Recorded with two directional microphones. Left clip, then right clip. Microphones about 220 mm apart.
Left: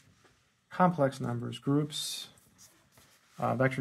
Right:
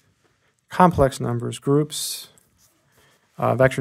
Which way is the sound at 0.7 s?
45° right (ahead or behind).